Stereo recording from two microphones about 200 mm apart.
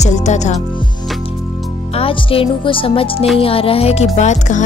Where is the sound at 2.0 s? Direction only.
25° left (ahead or behind).